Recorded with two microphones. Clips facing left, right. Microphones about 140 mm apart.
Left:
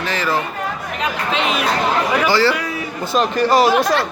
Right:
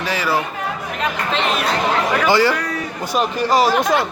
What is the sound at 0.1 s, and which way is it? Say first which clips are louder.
Speech: right 1 dB; 10° right (ahead or behind).